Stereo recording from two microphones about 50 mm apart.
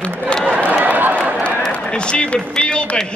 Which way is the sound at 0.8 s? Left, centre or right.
Right.